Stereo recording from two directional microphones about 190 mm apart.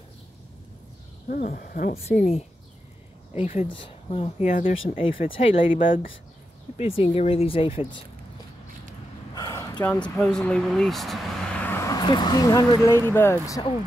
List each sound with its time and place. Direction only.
1.3 s speech: 50° left (ahead or behind)
3.6 s speech: 25° left (ahead or behind)
4.8 s speech: 30° left (ahead or behind)
5.8 s speech: 45° left (ahead or behind)
6.8 s speech: 30° left (ahead or behind)
9.3 s a sound: 20° left (ahead or behind)
9.8 s speech: 5° left (ahead or behind)